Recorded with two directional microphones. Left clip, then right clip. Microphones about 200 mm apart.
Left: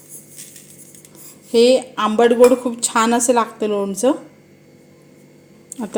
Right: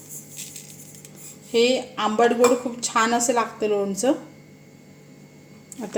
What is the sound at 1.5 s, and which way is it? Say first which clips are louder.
A woman's voice: left 7 dB; 35° left (ahead or behind).